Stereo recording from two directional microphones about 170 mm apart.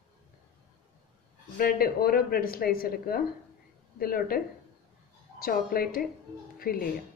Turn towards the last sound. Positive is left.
turn(degrees=60)  # may be behind; listen again after turning